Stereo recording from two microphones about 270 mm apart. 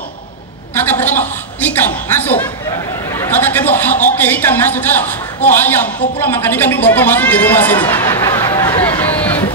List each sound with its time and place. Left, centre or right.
0.7 s a woman's voice: centre